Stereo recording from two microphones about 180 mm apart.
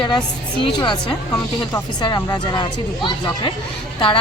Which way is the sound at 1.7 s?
25° left (ahead or behind).